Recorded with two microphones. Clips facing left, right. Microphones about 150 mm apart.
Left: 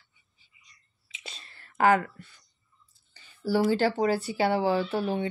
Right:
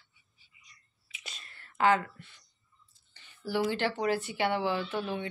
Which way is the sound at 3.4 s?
40° left (ahead or behind).